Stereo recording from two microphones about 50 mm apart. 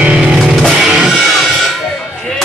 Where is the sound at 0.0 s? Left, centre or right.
Centre.